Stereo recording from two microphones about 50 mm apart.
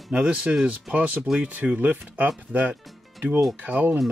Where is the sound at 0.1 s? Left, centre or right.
Centre.